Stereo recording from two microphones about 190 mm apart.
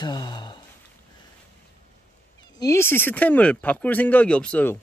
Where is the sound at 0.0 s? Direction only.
20° left (ahead or behind).